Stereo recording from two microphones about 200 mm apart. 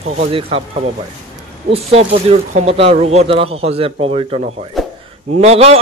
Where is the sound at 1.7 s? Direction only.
30° right (ahead or behind).